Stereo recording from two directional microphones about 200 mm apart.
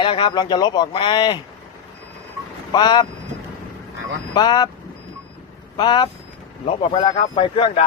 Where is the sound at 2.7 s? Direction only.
20° left (ahead or behind).